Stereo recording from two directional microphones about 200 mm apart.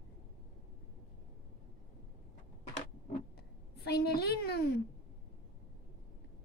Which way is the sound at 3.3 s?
50° left (ahead or behind).